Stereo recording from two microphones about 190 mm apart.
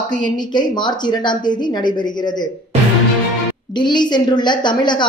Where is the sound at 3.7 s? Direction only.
25° left (ahead or behind).